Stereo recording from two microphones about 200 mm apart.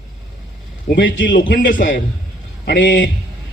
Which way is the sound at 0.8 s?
65° left (ahead or behind).